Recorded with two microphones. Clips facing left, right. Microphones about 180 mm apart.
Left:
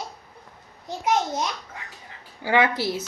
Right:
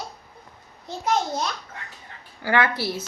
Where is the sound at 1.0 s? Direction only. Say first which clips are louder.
Left 1 dB; 15° left (ahead or behind).